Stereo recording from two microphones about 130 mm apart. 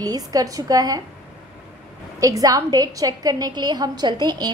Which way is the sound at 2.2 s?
25° right (ahead or behind).